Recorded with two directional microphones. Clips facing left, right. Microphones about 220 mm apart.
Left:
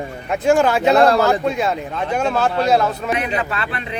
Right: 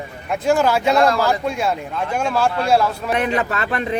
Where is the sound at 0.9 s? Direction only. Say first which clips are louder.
Left 5 dB; 30° left (ahead or behind).